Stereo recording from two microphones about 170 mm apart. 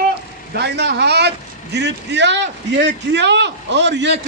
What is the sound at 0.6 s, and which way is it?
A man's voice, 80° right.